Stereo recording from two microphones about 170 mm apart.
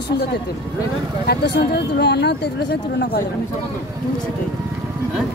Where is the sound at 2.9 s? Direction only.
60° left (ahead or behind).